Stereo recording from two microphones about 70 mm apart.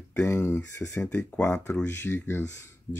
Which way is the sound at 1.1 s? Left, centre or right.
Left.